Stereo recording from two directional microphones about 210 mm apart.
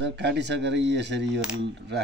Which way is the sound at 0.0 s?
55° right (ahead or behind).